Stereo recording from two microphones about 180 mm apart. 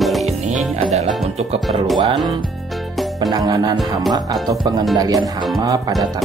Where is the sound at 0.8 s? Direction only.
40° right (ahead or behind).